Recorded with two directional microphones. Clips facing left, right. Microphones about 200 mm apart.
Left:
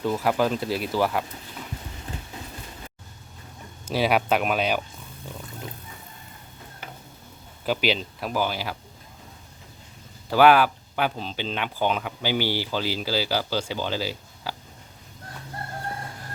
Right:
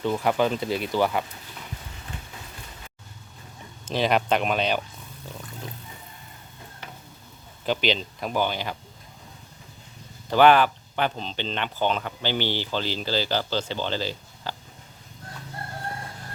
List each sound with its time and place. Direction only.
0.0 s speech: 5° left (ahead or behind)
3.8 s speech: 5° left (ahead or behind)
7.6 s speech: 5° left (ahead or behind)
10.2 s speech: 5° left (ahead or behind)